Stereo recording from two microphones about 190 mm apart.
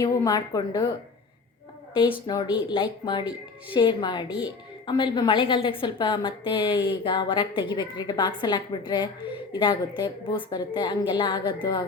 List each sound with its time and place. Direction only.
0.0 s a woman's voice: 20° left (ahead or behind)
1.9 s a woman's voice: 25° left (ahead or behind)
4.3 s speech: 5° right (ahead or behind)
4.9 s a woman's voice: 25° left (ahead or behind)